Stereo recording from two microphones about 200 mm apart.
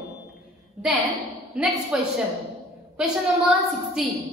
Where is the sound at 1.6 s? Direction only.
Centre (ahead or behind).